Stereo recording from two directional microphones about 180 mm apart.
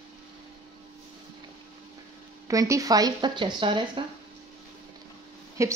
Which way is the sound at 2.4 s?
15° right (ahead or behind).